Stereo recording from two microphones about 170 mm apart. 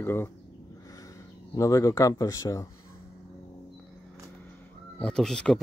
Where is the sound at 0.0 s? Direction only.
15° left (ahead or behind).